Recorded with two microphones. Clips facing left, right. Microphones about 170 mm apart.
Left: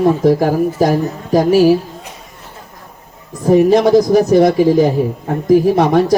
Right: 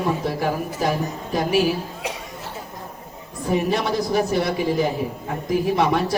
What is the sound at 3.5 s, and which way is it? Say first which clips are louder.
A man's voice: left 12 dB; 40° left (ahead or behind).